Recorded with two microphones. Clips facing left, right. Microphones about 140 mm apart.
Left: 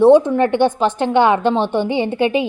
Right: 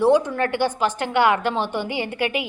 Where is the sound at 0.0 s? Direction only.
25° left (ahead or behind).